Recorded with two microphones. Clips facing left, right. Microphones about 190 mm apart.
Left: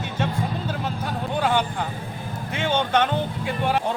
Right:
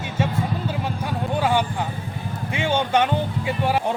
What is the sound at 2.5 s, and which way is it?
Music, 10° right (ahead or behind).